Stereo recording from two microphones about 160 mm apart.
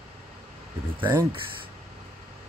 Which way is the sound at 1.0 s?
15° right (ahead or behind).